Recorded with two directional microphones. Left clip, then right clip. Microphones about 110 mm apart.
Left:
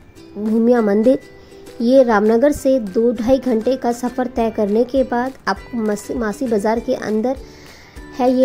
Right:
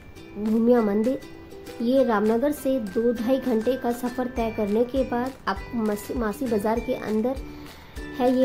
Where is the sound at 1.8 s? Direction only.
65° left (ahead or behind).